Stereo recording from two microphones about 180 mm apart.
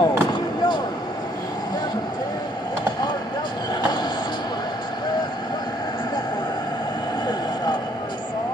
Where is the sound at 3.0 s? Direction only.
25° left (ahead or behind).